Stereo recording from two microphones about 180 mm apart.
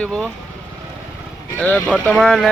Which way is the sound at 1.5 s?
10° left (ahead or behind).